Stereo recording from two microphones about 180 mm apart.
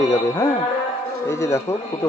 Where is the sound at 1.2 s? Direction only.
15° left (ahead or behind).